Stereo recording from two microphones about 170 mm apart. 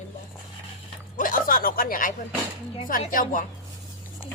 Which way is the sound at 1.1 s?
55° left (ahead or behind).